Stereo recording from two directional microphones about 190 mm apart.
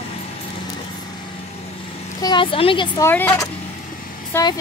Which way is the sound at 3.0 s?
10° left (ahead or behind).